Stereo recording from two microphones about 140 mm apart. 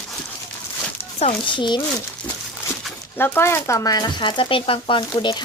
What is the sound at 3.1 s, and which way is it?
Speech, 15° left (ahead or behind).